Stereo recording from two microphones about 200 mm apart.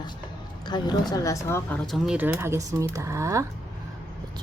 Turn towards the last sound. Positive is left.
turn(degrees=-15)  # may be behind; listen again after turning